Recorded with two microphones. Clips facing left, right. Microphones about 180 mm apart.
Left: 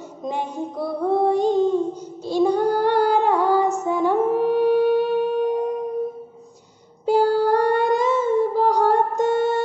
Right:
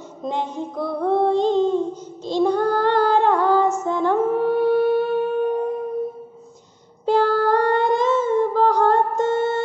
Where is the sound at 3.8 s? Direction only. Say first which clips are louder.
Even; 10° left (ahead or behind).